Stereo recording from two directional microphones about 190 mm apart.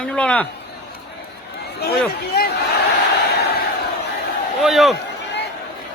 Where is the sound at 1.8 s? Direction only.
55° left (ahead or behind).